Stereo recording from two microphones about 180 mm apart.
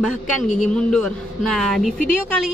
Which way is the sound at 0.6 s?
5° left (ahead or behind).